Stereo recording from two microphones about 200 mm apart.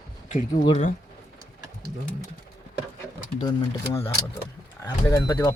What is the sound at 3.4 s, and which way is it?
Speech, 20° left (ahead or behind).